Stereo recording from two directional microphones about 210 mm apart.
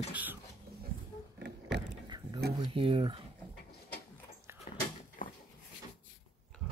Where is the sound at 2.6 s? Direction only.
25° right (ahead or behind).